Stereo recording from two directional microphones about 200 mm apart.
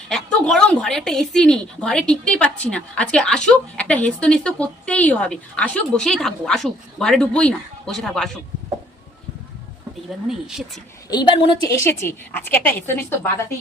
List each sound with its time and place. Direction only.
0.1 s a woman's voice: 5° left (ahead or behind)
10.2 s a woman's voice: centre (ahead or behind)
11.1 s a woman's voice: 20° left (ahead or behind)
11.7 s a woman's voice: 15° left (ahead or behind)